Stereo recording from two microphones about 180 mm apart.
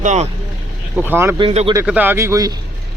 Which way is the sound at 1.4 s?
30° right (ahead or behind).